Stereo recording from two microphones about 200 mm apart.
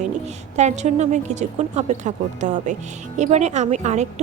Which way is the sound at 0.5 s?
35° right (ahead or behind).